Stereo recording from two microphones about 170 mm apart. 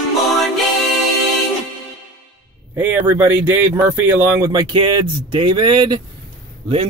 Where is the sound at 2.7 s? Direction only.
10° right (ahead or behind).